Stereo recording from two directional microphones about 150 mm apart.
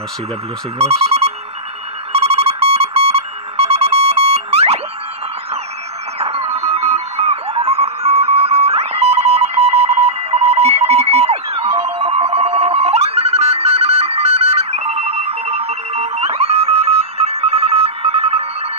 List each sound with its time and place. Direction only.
0.7 s speech: 45° right (ahead or behind)
2.1 s music: 45° right (ahead or behind)
6.1 s music: 40° right (ahead or behind)